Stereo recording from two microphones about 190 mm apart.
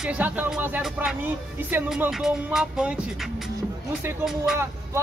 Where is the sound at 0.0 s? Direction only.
5° right (ahead or behind).